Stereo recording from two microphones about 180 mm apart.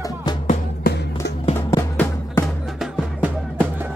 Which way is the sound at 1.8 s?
15° left (ahead or behind).